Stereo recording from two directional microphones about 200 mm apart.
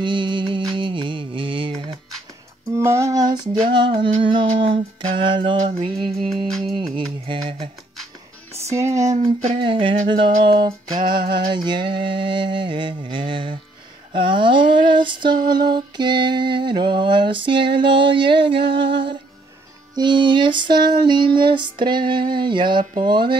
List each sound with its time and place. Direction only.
0.0 s music: 25° right (ahead or behind)
2.8 s a sound: 15° right (ahead or behind)
5.8 s music: 25° right (ahead or behind)
7.2 s a sound: 25° right (ahead or behind)
8.6 s speech: 15° right (ahead or behind)
9.4 s music: 30° right (ahead or behind)
11.0 s mantra: 25° right (ahead or behind)
14.1 s a sound: 25° right (ahead or behind)
20.0 s music: 25° right (ahead or behind)